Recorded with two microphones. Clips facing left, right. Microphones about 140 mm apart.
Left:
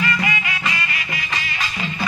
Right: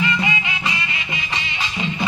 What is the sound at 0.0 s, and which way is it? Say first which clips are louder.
Music: right 1 dB; 20° right (ahead or behind).